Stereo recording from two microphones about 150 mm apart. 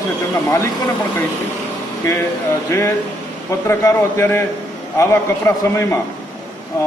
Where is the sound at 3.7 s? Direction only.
15° left (ahead or behind).